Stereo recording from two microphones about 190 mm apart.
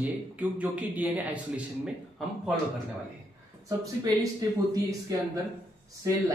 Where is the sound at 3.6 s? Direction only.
20° right (ahead or behind).